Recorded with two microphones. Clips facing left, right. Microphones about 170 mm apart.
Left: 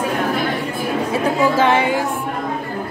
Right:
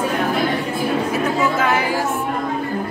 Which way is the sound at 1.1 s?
30° left (ahead or behind).